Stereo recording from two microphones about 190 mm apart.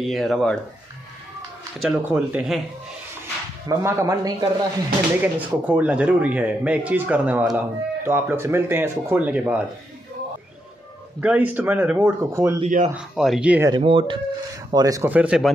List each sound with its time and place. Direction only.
0.0 s speech: centre (ahead or behind)
1.8 s speech: 5° right (ahead or behind)
3.6 s speech: 15° right (ahead or behind)
5.2 s speech: 10° right (ahead or behind)
11.1 s speech: 10° right (ahead or behind)
12.6 s speech: 40° right (ahead or behind)
12.9 s speech: centre (ahead or behind)
13.7 s speech: 25° right (ahead or behind); by 15.5 s 5° right (ahead or behind)